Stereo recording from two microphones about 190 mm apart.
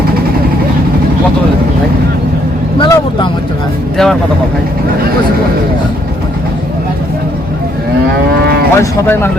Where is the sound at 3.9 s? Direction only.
Centre (ahead or behind).